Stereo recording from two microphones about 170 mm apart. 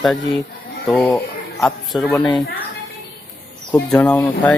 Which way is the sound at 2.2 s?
25° left (ahead or behind).